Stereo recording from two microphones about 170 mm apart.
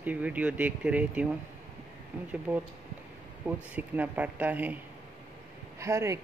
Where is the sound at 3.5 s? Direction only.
10° right (ahead or behind).